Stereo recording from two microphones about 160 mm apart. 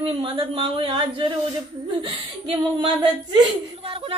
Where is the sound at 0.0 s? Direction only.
35° right (ahead or behind).